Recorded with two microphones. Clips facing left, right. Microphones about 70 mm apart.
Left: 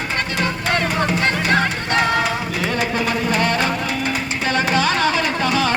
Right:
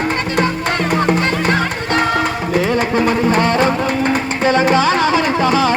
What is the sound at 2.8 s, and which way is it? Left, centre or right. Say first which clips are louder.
Music: right 6 dB; right.